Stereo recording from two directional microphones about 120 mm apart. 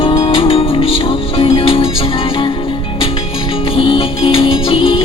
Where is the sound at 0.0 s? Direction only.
50° left (ahead or behind).